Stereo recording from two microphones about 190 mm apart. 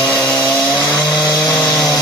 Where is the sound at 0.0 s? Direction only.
5° left (ahead or behind).